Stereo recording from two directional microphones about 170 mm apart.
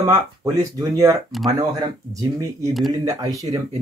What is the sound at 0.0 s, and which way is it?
Speech, 20° right (ahead or behind).